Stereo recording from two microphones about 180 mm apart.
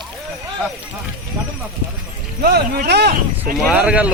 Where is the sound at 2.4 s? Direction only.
65° right (ahead or behind).